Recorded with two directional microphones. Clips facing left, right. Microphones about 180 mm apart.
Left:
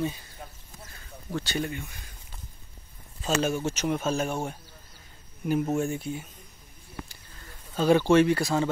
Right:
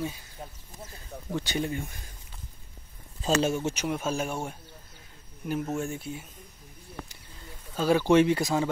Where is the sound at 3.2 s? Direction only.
25° right (ahead or behind).